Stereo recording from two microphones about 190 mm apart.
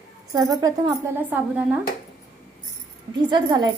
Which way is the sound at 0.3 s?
20° right (ahead or behind).